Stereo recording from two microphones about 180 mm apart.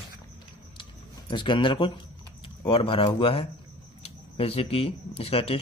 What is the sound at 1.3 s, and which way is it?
Speech, 25° left (ahead or behind).